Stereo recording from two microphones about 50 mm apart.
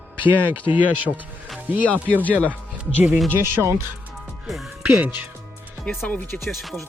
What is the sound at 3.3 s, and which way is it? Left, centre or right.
Speech, right.